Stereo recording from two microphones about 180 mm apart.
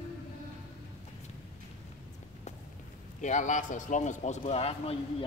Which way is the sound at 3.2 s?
45° left (ahead or behind).